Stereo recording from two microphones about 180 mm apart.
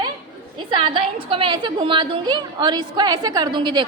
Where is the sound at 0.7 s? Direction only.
30° right (ahead or behind).